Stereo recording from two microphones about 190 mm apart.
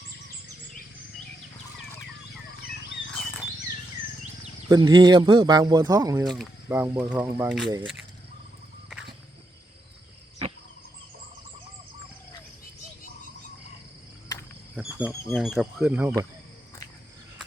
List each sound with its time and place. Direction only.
3.1 s wild animals: 5° left (ahead or behind)
4.7 s speech: 20° right (ahead or behind)
6.2 s speech: centre (ahead or behind)
6.7 s speech: 10° right (ahead or behind)
14.3 s cricket: 20° left (ahead or behind)
14.8 s cricket: 10° right (ahead or behind)
15.3 s speech: centre (ahead or behind)
15.8 s speech: 10° right (ahead or behind)